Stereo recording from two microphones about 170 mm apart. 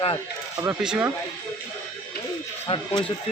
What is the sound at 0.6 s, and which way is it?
Speech, 5° right (ahead or behind).